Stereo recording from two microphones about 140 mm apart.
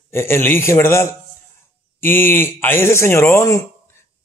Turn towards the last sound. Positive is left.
turn(degrees=20)  # may be behind; listen again after turning